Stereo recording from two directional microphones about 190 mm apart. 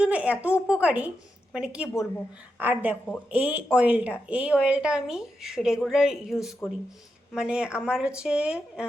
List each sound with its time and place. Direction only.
0.0 s a woman's voice: 5° right (ahead or behind)
1.9 s a woman's voice: 10° left (ahead or behind)
2.6 s a woman's voice: 10° right (ahead or behind)